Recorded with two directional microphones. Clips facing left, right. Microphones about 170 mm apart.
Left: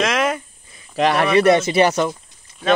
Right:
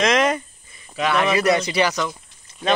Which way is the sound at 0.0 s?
5° left (ahead or behind).